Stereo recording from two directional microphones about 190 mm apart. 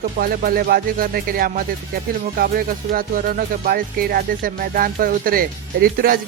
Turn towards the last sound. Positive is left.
turn(degrees=-50)  # may be behind; listen again after turning